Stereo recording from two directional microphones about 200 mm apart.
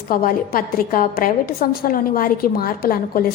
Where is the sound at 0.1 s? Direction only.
45° left (ahead or behind).